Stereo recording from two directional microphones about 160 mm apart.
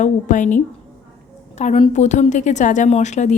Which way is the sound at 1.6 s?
45° left (ahead or behind).